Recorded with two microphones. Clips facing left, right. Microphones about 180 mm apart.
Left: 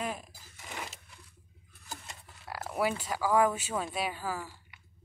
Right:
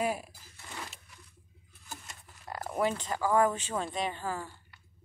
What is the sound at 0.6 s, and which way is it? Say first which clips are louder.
Sewing machine: left 2 dB; 15° left (ahead or behind).